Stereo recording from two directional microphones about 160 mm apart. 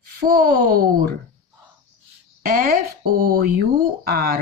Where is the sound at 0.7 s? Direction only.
70° right (ahead or behind).